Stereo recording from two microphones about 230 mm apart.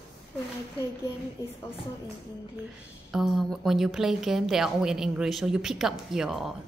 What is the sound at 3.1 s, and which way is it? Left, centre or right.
A woman's voice, centre.